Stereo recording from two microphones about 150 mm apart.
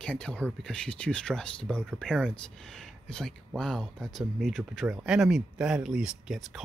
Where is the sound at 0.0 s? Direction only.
5° left (ahead or behind).